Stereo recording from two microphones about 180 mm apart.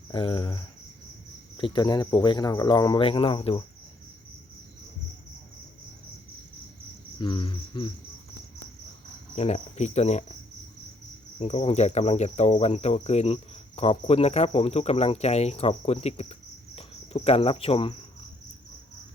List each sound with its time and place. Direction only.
0.1 s speech: 30° left (ahead or behind)
7.2 s speech: 25° left (ahead or behind)
9.3 s cricket: 35° left (ahead or behind)
11.3 s cricket: 40° left (ahead or behind)